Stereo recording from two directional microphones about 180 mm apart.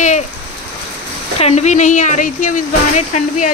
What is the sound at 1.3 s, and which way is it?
Speech, 35° left (ahead or behind).